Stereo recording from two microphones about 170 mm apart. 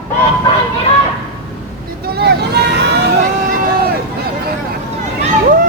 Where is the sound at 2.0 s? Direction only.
65° right (ahead or behind).